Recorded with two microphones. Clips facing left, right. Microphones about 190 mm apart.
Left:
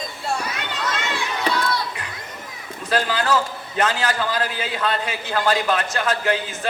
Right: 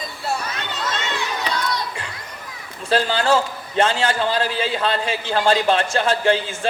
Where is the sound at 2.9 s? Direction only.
30° right (ahead or behind).